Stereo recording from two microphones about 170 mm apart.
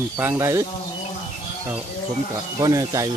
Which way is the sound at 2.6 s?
20° right (ahead or behind).